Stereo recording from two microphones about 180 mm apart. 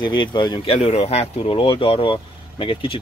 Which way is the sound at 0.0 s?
25° left (ahead or behind).